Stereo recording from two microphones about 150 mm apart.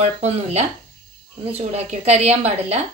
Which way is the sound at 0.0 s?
45° right (ahead or behind).